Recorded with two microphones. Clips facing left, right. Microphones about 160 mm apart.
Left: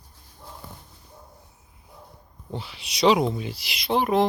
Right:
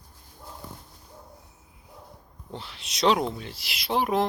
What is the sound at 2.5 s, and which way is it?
Speech, 5° left (ahead or behind).